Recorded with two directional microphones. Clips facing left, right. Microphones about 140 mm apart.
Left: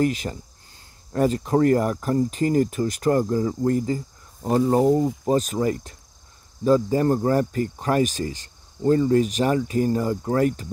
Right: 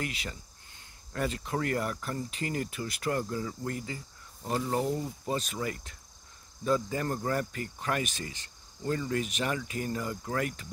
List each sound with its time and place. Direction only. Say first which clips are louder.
0.0 s speech: left 14 dB; 40° left (ahead or behind)